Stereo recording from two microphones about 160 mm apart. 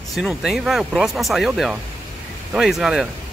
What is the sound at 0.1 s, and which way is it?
Speech, centre (ahead or behind).